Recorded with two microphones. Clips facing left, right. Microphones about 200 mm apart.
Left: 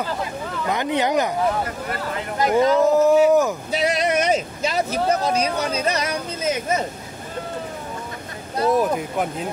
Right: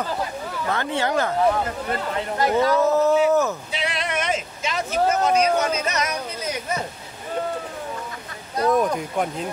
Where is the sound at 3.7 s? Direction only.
40° left (ahead or behind); by 6.8 s 20° left (ahead or behind).